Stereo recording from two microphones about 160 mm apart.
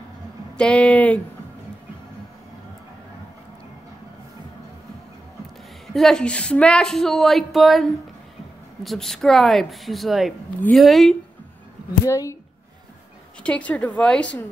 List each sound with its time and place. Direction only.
0.6 s a woman's voice: 5° left (ahead or behind)
5.9 s a woman's voice: 5° left (ahead or behind)
12.1 s speech: 20° left (ahead or behind)
13.4 s a woman's voice: 5° left (ahead or behind)